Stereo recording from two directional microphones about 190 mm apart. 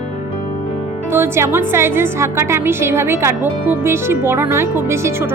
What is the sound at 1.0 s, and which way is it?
Speech, 10° right (ahead or behind).